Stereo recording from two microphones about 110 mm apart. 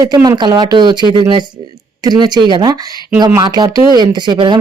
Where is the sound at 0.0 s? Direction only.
35° right (ahead or behind).